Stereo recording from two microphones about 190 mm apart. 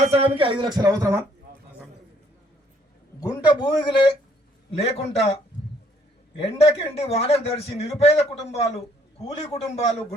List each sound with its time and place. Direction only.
0.0 s speech: 30° right (ahead or behind)
3.2 s a man's voice: 20° left (ahead or behind)